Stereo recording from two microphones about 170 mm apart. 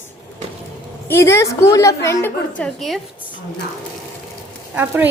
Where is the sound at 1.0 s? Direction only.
15° left (ahead or behind).